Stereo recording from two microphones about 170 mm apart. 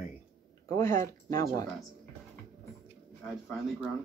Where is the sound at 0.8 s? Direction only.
20° left (ahead or behind).